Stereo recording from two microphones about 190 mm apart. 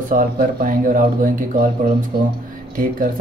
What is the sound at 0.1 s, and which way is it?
Speech, 45° right (ahead or behind).